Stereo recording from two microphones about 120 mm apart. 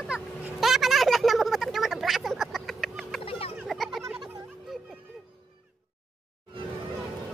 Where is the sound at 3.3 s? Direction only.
50° left (ahead or behind).